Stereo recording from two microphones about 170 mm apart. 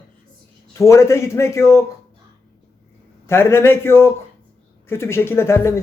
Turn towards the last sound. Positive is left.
turn(degrees=15)  # may be behind; listen again after turning